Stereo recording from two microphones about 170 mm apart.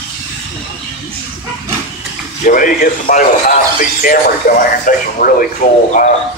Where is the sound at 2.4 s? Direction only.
50° left (ahead or behind).